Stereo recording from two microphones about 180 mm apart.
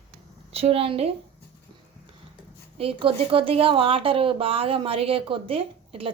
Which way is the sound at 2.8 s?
30° right (ahead or behind).